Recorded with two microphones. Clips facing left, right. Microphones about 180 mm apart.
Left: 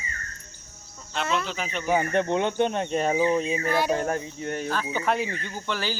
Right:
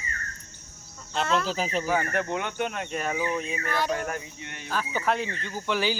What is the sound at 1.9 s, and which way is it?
Speech, 20° left (ahead or behind).